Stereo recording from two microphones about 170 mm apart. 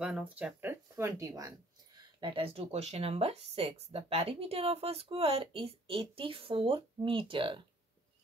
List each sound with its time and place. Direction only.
0.0 s speech: 5° right (ahead or behind)
2.1 s speech: 30° right (ahead or behind)